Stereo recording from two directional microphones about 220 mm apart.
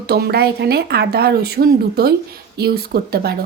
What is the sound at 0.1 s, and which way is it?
A woman's voice, 45° right (ahead or behind).